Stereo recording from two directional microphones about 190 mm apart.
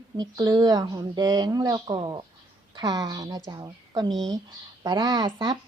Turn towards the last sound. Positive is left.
turn(degrees=-20)  # may be behind; listen again after turning